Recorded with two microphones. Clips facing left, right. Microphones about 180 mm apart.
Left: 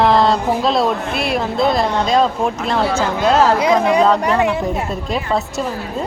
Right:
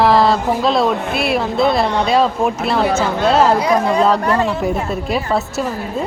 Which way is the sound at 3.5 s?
20° left (ahead or behind).